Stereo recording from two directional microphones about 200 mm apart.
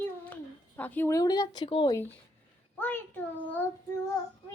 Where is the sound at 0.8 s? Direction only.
10° left (ahead or behind); by 2.0 s 25° left (ahead or behind).